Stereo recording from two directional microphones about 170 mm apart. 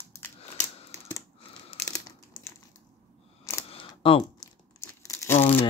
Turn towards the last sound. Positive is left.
turn(degrees=15)  # may be behind; listen again after turning